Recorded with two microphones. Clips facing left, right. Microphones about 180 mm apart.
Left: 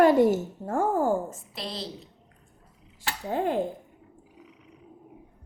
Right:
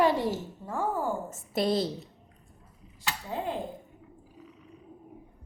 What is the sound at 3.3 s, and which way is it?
Speech, 55° left (ahead or behind).